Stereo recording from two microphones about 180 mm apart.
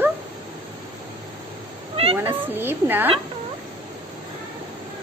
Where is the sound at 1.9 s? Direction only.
30° right (ahead or behind).